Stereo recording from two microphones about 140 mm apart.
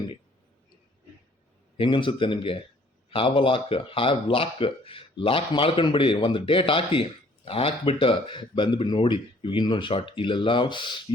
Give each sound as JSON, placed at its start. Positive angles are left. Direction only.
{"t": 1.8, "sound": "speech", "side_deg": 35}